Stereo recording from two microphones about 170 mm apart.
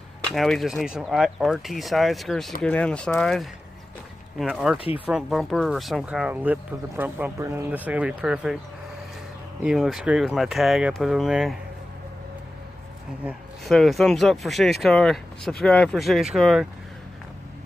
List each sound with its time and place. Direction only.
0.2 s speech: centre (ahead or behind)
4.7 s speech: 35° left (ahead or behind)
5.0 s speech: centre (ahead or behind)
9.6 s speech: centre (ahead or behind)
13.7 s speech: centre (ahead or behind)